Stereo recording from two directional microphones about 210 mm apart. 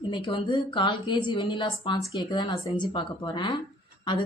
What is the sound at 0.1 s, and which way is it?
A woman's voice, 25° left (ahead or behind).